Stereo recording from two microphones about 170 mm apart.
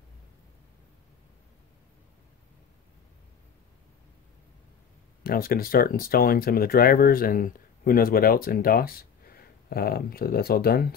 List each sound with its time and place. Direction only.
5.2 s speech: 60° left (ahead or behind)